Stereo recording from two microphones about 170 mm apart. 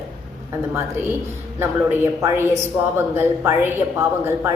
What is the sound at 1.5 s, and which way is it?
A woman's voice, 15° right (ahead or behind).